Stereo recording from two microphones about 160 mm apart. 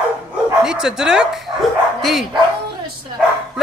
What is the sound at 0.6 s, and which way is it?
Speech, 5° right (ahead or behind).